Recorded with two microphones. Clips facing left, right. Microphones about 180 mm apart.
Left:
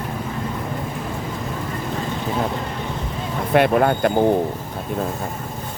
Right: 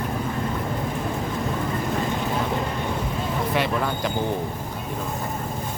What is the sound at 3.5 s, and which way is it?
Speech, 55° left (ahead or behind).